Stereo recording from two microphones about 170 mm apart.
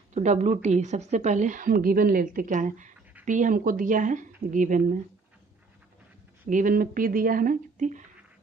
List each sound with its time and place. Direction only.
0.1 s a woman's voice: 40° right (ahead or behind)
6.5 s speech: 55° right (ahead or behind)